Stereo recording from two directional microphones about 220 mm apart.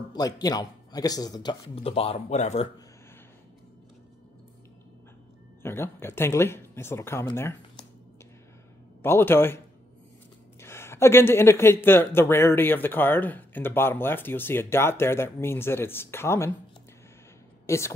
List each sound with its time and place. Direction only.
0.1 s speech: 20° left (ahead or behind)
5.6 s speech: 10° left (ahead or behind)
9.0 s speech: 10° left (ahead or behind)
10.6 s speech: 10° left (ahead or behind)
17.6 s a woman's voice: 10° left (ahead or behind)